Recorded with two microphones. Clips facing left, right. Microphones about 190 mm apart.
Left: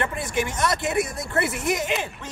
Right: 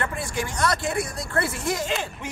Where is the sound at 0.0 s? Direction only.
20° left (ahead or behind).